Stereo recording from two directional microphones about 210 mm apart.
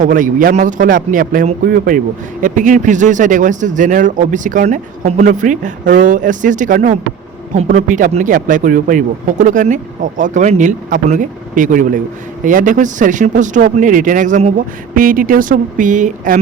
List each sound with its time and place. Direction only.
0.0 s speech: 40° right (ahead or behind)